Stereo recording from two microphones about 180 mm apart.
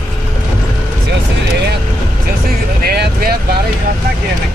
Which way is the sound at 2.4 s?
60° right (ahead or behind).